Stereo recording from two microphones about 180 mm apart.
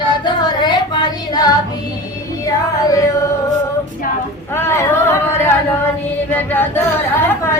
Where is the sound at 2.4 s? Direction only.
20° left (ahead or behind).